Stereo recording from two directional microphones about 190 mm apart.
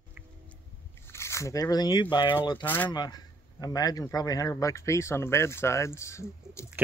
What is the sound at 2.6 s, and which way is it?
Speech, 10° left (ahead or behind).